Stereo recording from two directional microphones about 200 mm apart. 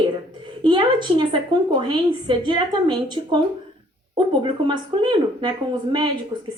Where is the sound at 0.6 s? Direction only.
25° right (ahead or behind).